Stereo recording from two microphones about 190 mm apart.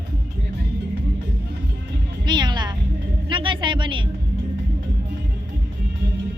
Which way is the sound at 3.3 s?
25° right (ahead or behind).